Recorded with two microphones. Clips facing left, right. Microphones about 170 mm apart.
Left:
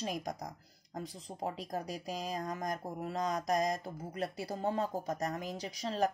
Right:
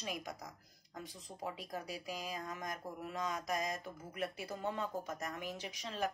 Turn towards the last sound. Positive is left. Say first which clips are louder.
# left 7 dB
turn(degrees=40)  # may be behind; listen again after turning